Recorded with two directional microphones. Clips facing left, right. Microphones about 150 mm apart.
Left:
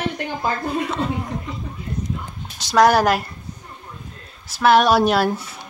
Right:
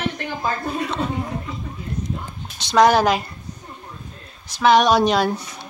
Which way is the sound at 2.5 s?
5° left (ahead or behind).